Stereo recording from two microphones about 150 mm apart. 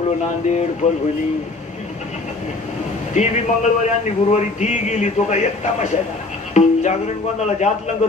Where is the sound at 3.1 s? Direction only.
50° left (ahead or behind).